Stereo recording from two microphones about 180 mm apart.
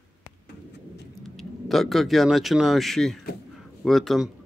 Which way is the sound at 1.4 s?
Centre (ahead or behind).